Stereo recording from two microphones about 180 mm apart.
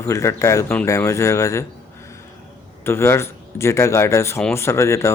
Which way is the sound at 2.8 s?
15° left (ahead or behind).